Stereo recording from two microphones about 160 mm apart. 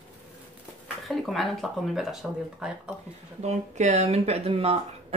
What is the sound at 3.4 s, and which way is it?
Speech, 45° right (ahead or behind).